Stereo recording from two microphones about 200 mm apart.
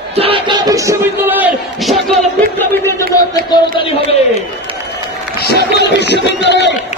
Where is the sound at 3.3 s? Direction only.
20° left (ahead or behind).